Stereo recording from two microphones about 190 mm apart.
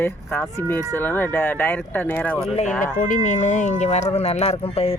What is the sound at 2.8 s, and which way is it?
Speech, 45° left (ahead or behind).